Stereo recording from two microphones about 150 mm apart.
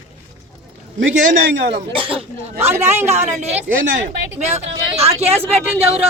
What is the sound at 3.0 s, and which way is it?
Speech, 50° right (ahead or behind).